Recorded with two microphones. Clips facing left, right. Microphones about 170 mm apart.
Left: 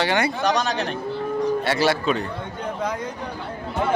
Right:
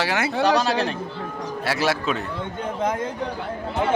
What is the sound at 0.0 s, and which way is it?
Speech, 5° right (ahead or behind).